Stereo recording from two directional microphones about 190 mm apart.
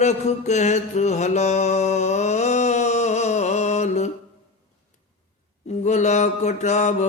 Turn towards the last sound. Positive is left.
turn(degrees=35)  # may be behind; listen again after turning